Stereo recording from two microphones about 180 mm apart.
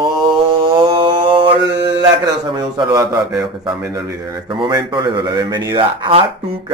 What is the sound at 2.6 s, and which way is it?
Speech, 20° right (ahead or behind).